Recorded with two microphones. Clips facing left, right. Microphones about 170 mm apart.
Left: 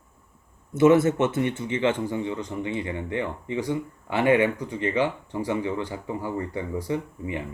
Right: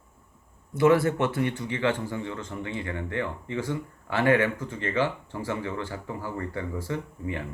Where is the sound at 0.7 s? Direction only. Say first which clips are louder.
Left 3 dB; 20° left (ahead or behind).